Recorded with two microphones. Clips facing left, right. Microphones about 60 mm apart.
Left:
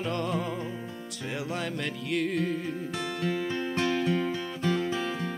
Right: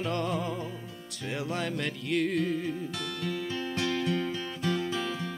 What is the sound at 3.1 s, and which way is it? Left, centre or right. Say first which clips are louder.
Music: left 4 dB; left.